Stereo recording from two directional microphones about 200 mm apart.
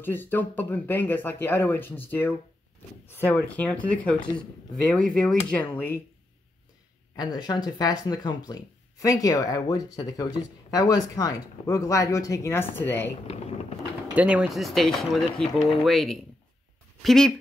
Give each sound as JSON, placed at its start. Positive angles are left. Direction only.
{"t": 0.0, "sound": "speech", "side_deg": 10}
{"t": 7.2, "sound": "speech", "side_deg": 20}
{"t": 14.1, "sound": "speech", "side_deg": -5}